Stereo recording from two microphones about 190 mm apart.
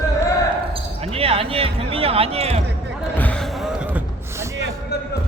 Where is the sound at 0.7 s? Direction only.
30° right (ahead or behind).